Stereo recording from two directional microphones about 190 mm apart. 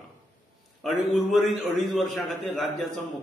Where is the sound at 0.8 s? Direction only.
Centre (ahead or behind).